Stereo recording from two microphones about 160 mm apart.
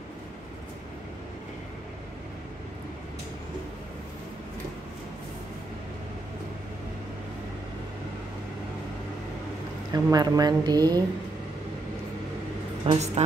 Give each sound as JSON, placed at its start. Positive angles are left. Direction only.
{"t": 9.9, "sound": "speech", "side_deg": -25}
{"t": 12.8, "sound": "speech", "side_deg": -40}